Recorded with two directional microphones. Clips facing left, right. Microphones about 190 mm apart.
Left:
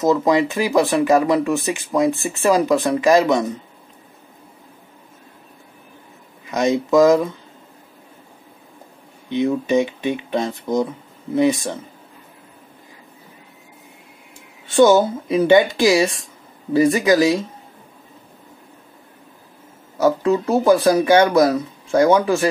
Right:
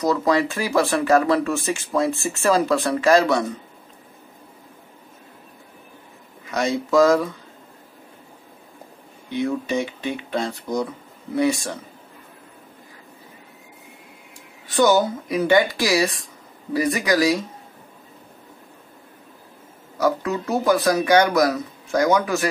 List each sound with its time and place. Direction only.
0.0 s speech: 20° left (ahead or behind)
6.5 s speech: 20° left (ahead or behind)
9.3 s speech: 20° left (ahead or behind)
14.7 s speech: 25° left (ahead or behind)
20.0 s speech: 30° left (ahead or behind)